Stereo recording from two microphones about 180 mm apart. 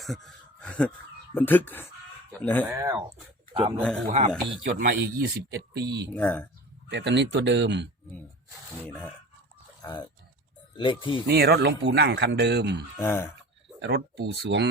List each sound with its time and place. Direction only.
0.0 s speech: centre (ahead or behind)
2.6 s speech: 20° right (ahead or behind)
3.5 s speech: 30° right (ahead or behind)
4.0 s speech: 40° right (ahead or behind)
5.5 s speech: 70° right (ahead or behind)
6.1 s speech: 10° left (ahead or behind)
6.9 s speech: 75° right (ahead or behind)
8.8 s speech: 10° left (ahead or behind)
11.3 s speech: 65° right (ahead or behind)
13.0 s speech: 15° left (ahead or behind)
13.7 s speech: 70° right (ahead or behind)